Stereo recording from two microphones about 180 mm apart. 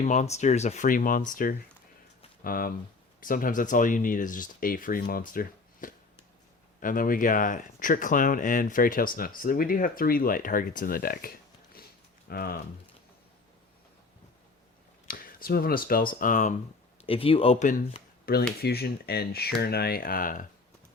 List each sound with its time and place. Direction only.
0.0 s speech: 40° left (ahead or behind)
12.3 s speech: 55° left (ahead or behind)
15.0 s speech: 55° left (ahead or behind)
17.0 s speech: 30° left (ahead or behind)
18.3 s speech: 55° left (ahead or behind)